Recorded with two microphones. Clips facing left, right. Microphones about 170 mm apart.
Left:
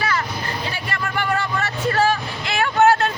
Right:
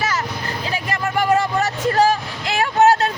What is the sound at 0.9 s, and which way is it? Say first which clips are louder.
Vehicle: right 6 dB; 40° right (ahead or behind).